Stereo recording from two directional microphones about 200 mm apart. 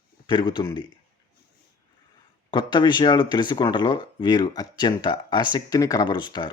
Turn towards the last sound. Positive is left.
turn(degrees=20)  # may be behind; listen again after turning